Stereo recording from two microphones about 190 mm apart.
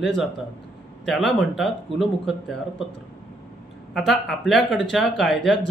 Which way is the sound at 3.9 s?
Centre (ahead or behind).